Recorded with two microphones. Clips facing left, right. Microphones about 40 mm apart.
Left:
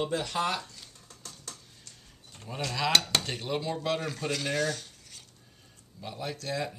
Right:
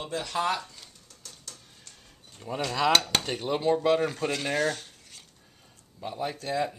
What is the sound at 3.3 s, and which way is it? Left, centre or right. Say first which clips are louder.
Dishes: right 6 dB; right.